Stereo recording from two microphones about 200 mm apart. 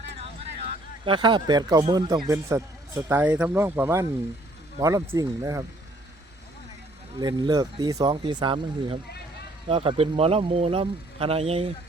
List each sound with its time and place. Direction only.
1.0 s a man's voice: 25° right (ahead or behind)
7.2 s speech: 20° right (ahead or behind)